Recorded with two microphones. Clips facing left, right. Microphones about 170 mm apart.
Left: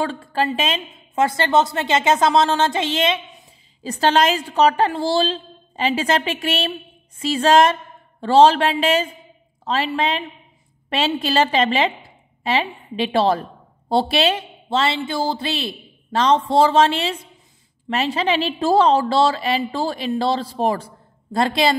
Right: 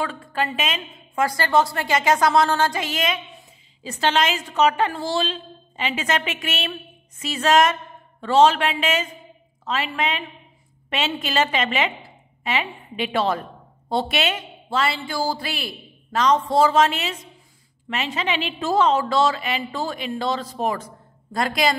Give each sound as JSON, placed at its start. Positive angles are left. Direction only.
{"t": 0.0, "sound": "a woman's voice", "side_deg": 30}
{"t": 3.8, "sound": "a woman's voice", "side_deg": 40}